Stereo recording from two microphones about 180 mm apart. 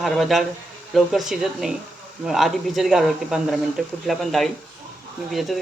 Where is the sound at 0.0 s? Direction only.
Centre (ahead or behind).